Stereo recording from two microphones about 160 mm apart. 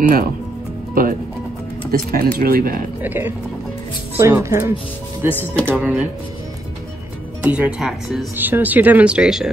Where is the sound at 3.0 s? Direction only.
10° right (ahead or behind).